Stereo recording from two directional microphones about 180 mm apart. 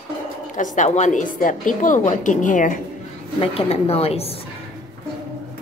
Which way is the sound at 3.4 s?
30° left (ahead or behind).